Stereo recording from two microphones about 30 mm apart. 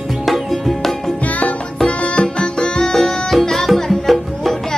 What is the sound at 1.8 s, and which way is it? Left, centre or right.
Music, left.